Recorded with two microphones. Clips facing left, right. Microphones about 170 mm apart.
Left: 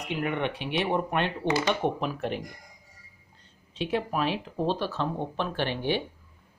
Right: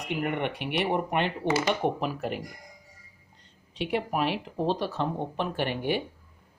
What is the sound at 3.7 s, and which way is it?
Speech, 15° right (ahead or behind).